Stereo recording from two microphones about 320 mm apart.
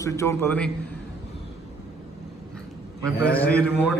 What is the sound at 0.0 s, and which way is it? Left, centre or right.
Speech, centre.